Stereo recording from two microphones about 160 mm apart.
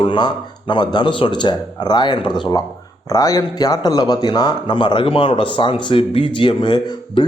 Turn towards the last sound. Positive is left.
turn(degrees=30)  # may be behind; listen again after turning